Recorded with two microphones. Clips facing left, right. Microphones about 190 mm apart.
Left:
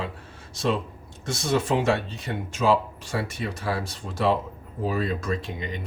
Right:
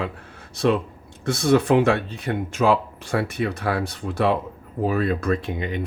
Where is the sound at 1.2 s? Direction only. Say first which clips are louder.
Right 7 dB; 60° right (ahead or behind).